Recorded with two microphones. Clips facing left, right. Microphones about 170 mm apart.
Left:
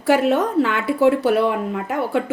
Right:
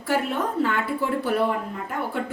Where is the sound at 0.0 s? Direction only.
85° left.